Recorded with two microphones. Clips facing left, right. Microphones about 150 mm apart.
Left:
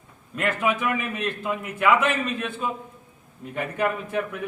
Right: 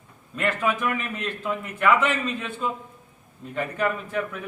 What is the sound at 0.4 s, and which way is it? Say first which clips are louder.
A man's voice: left 1 dB; 10° left (ahead or behind).